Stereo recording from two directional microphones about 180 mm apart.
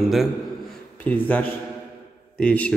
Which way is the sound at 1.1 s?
10° left (ahead or behind).